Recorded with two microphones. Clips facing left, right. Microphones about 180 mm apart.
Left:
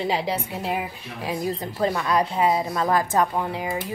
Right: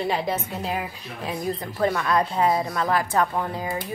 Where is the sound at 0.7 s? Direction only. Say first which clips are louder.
Left 3 dB; 5° left (ahead or behind).